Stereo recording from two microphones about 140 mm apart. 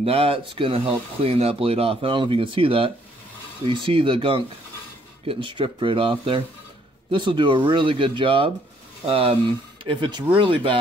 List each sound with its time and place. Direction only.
0.0 s speech: 45° right (ahead or behind)